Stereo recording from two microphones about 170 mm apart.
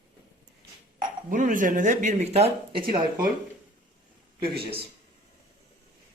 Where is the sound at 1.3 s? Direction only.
50° right (ahead or behind); by 3.0 s 35° right (ahead or behind).